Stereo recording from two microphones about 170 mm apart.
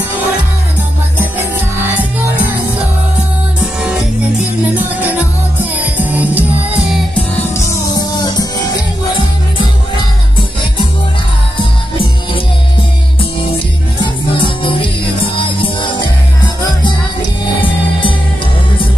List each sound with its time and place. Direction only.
5.6 s music: 10° right (ahead or behind)
7.3 s music: 15° left (ahead or behind)
14.0 s music: 30° left (ahead or behind)